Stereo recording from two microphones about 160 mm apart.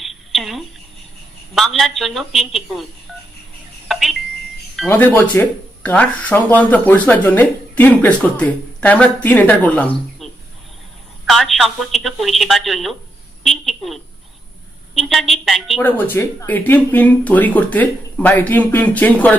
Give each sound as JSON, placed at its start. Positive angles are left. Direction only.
{"t": 0.0, "sound": "a sound", "side_deg": 0}
{"t": 1.5, "sound": "speech", "side_deg": 0}
{"t": 3.8, "sound": "alarm clock", "side_deg": 0}
{"t": 4.8, "sound": "speech", "side_deg": 15}
{"t": 10.2, "sound": "a sound", "side_deg": 0}
{"t": 11.2, "sound": "a woman's voice", "side_deg": 0}
{"t": 15.8, "sound": "speech", "side_deg": 10}